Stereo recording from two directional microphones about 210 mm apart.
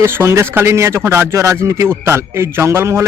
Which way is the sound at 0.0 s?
10° right (ahead or behind).